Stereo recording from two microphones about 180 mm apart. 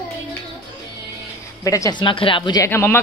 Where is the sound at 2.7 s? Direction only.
10° left (ahead or behind).